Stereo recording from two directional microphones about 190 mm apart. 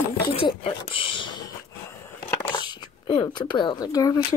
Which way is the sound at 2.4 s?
25° left (ahead or behind).